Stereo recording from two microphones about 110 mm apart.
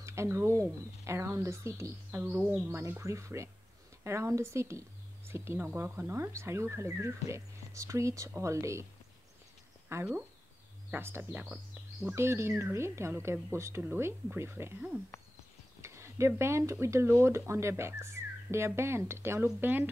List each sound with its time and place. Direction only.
0.0 s speech: 25° right (ahead or behind)
2.0 s music: 20° right (ahead or behind)
3.0 s speech: 25° right (ahead or behind)
9.9 s speech: 25° right (ahead or behind)
15.8 s a sound: 25° right (ahead or behind)
16.8 s speech: 25° right (ahead or behind)